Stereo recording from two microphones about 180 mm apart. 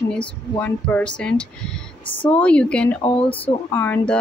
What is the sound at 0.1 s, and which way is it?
Speech, 5° left (ahead or behind).